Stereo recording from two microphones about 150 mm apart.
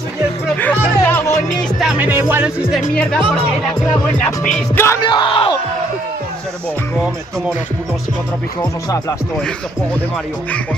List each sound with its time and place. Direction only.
0.6 s music: 10° left (ahead or behind)
1.8 s music: 5° right (ahead or behind)
4.5 s music: 5° left (ahead or behind)
5.0 s speech: 30° left (ahead or behind)